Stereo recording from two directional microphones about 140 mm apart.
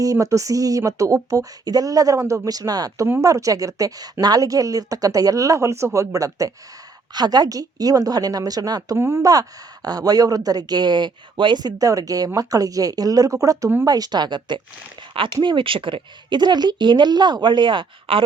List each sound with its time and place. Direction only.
0.0 s a woman's voice: 25° right (ahead or behind); by 18.3 s 40° right (ahead or behind)